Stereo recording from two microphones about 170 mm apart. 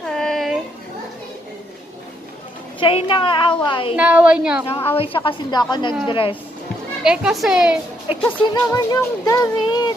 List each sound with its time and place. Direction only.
0.0 s a sound: centre (ahead or behind)
2.8 s speech: 30° left (ahead or behind)
3.9 s a woman's voice: 10° right (ahead or behind)
4.9 s a woman's voice: 30° left (ahead or behind)
7.0 s a child's voice: 5° right (ahead or behind)
8.2 s speech: 10° left (ahead or behind)